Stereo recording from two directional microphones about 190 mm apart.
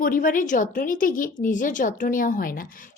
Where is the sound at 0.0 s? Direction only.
45° left (ahead or behind).